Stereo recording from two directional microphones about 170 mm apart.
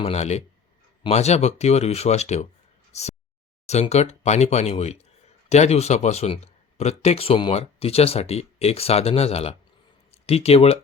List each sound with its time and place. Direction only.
0.0 s speech: 40° left (ahead or behind)
2.9 s a sound: 40° left (ahead or behind)
3.7 s speech: 40° left (ahead or behind)